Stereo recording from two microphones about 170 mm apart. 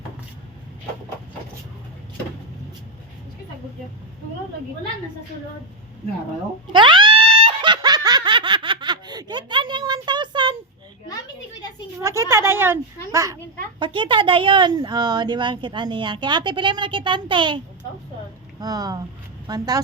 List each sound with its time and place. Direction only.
6.7 s laughter: 30° right (ahead or behind)
12.0 s speech: 15° right (ahead or behind)
13.7 s speech: 30° right (ahead or behind)
18.6 s speech: 20° right (ahead or behind)